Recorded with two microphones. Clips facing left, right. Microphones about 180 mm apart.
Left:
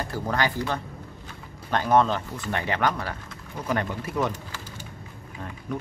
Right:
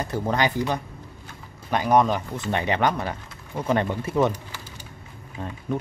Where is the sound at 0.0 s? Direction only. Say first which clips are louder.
Right 3 dB; 20° right (ahead or behind).